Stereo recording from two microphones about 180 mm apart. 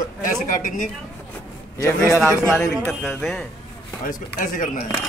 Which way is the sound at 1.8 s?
15° left (ahead or behind).